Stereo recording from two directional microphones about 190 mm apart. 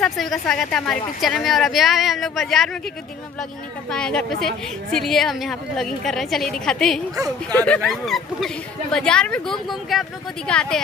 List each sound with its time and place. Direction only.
0.0 s a woman's voice: centre (ahead or behind)
3.9 s a woman's voice: 5° left (ahead or behind)